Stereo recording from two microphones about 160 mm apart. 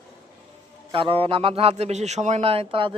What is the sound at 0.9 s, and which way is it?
A man's voice, 35° right (ahead or behind).